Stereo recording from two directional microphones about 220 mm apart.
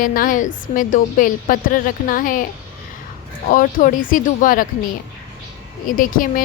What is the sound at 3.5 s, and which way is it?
A woman's voice, 35° left (ahead or behind).